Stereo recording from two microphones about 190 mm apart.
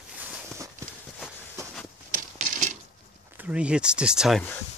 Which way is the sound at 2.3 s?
40° right (ahead or behind).